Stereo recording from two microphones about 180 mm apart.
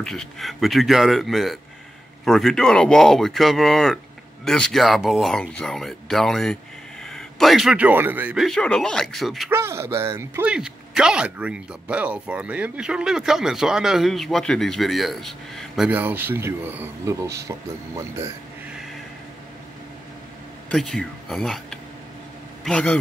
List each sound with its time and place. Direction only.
0.0 s a man's voice: 5° left (ahead or behind)
8.5 s speech: 5° left (ahead or behind)
9.5 s speech: 15° right (ahead or behind)
20.7 s a man's voice: centre (ahead or behind)